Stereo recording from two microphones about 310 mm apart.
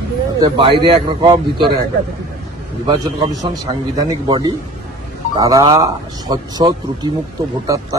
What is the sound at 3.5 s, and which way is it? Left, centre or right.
A man's voice, centre.